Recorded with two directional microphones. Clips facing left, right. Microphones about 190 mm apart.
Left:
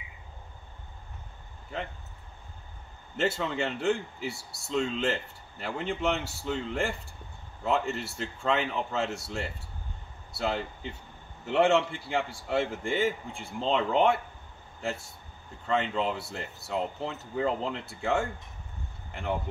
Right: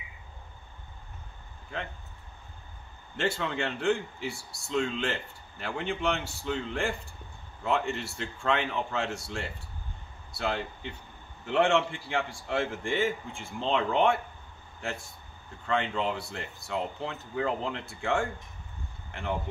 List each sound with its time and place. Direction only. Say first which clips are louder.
3.2 s speech: left 1 dB; 5° left (ahead or behind)